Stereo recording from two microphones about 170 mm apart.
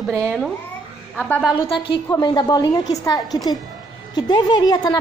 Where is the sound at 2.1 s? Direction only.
25° left (ahead or behind).